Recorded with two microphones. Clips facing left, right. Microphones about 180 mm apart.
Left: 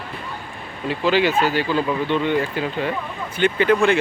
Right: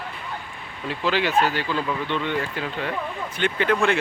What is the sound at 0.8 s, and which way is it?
Speech, centre (ahead or behind).